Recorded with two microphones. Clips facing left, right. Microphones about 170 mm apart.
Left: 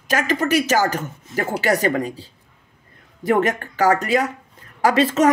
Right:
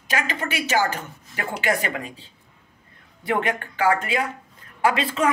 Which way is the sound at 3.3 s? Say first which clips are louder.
Left 5 dB; 40° left (ahead or behind).